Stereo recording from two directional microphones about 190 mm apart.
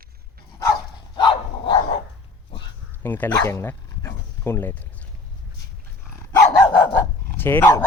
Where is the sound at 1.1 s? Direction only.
25° left (ahead or behind).